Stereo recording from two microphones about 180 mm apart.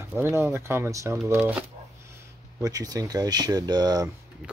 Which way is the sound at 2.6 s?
20° right (ahead or behind).